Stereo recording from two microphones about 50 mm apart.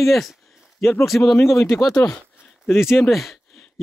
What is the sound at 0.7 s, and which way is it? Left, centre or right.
Speech, left.